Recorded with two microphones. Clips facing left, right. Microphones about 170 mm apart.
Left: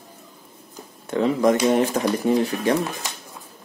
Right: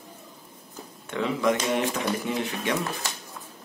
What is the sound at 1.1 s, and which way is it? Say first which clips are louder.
Speech: left 6 dB; 40° left (ahead or behind).